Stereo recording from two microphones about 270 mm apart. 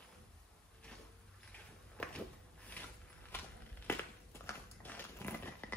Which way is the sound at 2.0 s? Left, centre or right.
Centre.